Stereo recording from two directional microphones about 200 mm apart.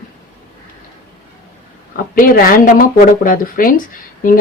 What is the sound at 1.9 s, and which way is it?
Speech, 45° left (ahead or behind).